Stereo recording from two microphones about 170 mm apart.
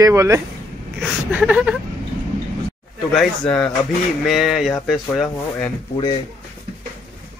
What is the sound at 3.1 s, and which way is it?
Speech, centre (ahead or behind).